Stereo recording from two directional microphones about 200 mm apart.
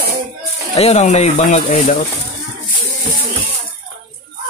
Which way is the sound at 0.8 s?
30° left (ahead or behind).